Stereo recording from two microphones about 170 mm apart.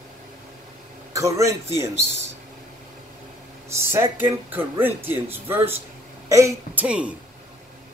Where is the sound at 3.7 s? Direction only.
15° right (ahead or behind).